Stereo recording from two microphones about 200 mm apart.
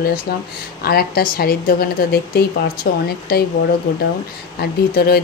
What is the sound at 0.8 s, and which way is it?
Speech, 50° left (ahead or behind).